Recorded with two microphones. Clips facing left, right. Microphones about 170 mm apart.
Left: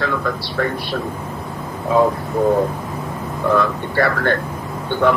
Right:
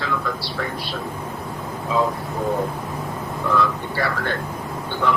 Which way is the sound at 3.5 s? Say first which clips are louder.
Left 4 dB; 55° left (ahead or behind).